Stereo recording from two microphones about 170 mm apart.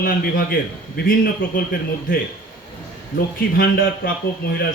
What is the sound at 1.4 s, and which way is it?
Speech, 60° left (ahead or behind).